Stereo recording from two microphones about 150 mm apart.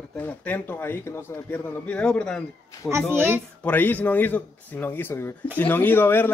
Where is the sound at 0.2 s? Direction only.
15° left (ahead or behind).